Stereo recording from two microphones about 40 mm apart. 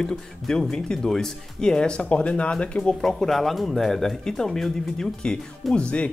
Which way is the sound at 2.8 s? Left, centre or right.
Centre.